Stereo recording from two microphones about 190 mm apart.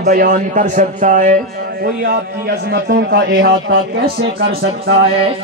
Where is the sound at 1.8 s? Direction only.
60° right (ahead or behind).